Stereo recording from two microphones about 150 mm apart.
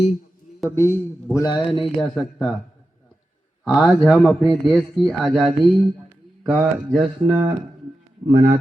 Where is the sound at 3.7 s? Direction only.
Centre (ahead or behind).